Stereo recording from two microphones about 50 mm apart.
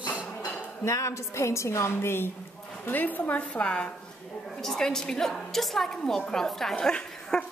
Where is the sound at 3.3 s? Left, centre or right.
Left.